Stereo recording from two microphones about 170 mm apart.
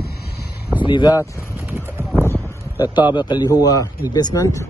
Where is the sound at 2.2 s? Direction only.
15° left (ahead or behind).